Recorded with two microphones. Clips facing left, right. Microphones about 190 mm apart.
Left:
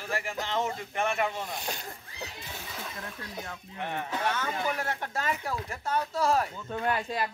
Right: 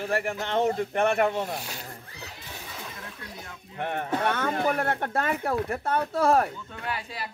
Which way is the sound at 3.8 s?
55° right (ahead or behind).